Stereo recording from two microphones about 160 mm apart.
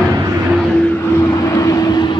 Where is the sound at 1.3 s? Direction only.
20° left (ahead or behind).